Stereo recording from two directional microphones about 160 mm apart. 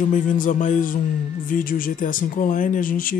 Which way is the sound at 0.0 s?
55° left (ahead or behind).